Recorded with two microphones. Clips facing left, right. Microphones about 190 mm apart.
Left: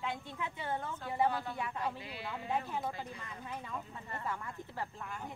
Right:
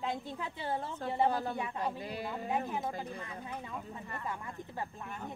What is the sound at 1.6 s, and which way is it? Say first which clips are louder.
Speech: right 2 dB; 20° right (ahead or behind).